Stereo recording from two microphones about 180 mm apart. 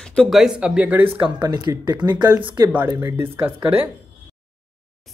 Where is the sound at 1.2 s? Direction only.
25° right (ahead or behind).